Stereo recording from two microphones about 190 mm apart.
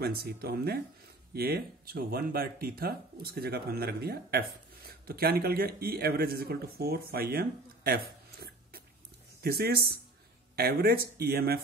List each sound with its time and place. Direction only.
0.0 s speech: 55° right (ahead or behind)